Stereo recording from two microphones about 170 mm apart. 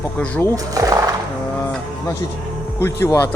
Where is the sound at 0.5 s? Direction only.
20° right (ahead or behind).